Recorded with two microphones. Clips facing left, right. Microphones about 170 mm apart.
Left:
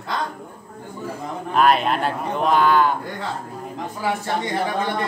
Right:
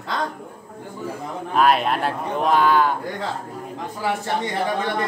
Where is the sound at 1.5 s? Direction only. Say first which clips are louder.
Left 1 dB; centre (ahead or behind).